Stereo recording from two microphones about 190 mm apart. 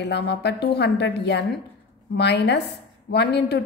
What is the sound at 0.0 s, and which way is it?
A woman's voice, 60° left (ahead or behind).